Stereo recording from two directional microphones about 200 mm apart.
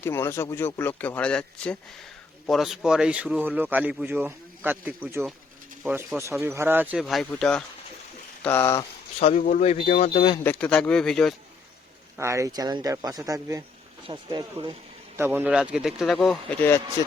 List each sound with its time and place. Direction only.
0.0 s a man's voice: 10° left (ahead or behind)
9.3 s speech: 45° left (ahead or behind)
10.4 s a man's voice: 10° left (ahead or behind)
12.1 s speech: 15° right (ahead or behind)
15.1 s a man's voice: 10° right (ahead or behind); by 16.8 s 10° left (ahead or behind)